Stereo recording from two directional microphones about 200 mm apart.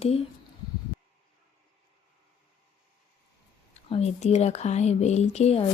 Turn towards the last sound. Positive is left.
turn(degrees=30)  # may be behind; listen again after turning